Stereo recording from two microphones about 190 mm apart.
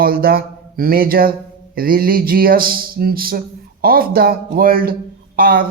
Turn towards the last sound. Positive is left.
turn(degrees=-50)  # may be behind; listen again after turning